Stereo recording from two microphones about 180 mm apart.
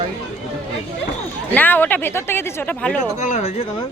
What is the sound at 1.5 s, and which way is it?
Speech, 10° left (ahead or behind).